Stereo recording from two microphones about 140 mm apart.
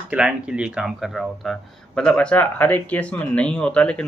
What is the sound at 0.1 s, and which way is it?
Speech, 5° right (ahead or behind).